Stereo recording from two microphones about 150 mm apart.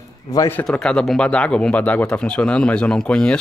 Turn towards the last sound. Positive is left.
turn(degrees=5)  # may be behind; listen again after turning